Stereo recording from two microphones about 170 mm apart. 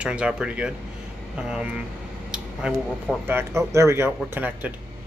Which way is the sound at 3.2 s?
15° right (ahead or behind).